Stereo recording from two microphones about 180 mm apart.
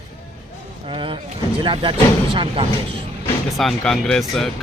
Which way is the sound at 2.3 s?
30° right (ahead or behind).